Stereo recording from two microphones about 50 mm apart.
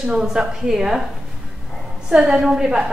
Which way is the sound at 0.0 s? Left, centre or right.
Centre.